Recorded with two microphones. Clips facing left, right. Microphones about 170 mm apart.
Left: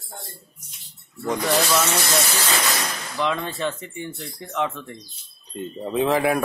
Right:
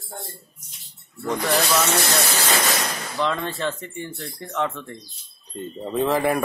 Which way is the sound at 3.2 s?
10° left (ahead or behind).